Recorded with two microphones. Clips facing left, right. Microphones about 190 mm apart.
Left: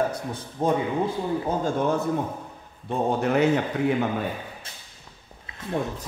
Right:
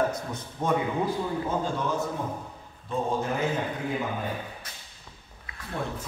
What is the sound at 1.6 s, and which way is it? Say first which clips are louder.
Speech: left 5 dB; 55° left (ahead or behind).